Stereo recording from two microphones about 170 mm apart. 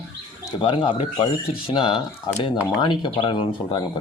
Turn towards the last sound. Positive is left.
turn(degrees=25)  # may be behind; listen again after turning